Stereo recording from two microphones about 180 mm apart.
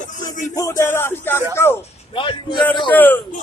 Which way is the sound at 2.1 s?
25° left (ahead or behind).